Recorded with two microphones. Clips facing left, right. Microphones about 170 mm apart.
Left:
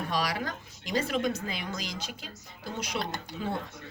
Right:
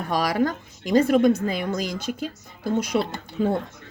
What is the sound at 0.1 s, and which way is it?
Speech, 50° right (ahead or behind).